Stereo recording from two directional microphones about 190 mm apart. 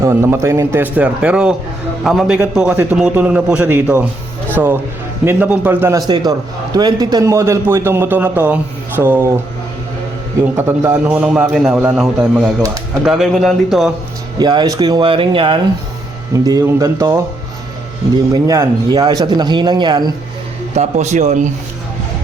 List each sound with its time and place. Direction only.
0.0 s a man's voice: 15° right (ahead or behind)
10.6 s a man's voice: 10° right (ahead or behind)
14.3 s a man's voice: 20° right (ahead or behind)
18.4 s speech: 20° right (ahead or behind)
20.7 s a man's voice: 35° right (ahead or behind)